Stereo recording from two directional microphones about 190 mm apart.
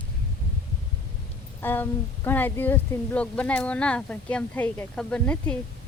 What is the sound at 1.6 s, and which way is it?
Speech, 10° left (ahead or behind).